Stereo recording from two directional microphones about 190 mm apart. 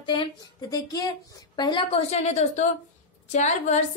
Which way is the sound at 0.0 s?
20° left (ahead or behind).